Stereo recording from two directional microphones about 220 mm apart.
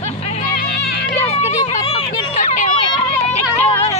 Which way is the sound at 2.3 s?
35° left (ahead or behind).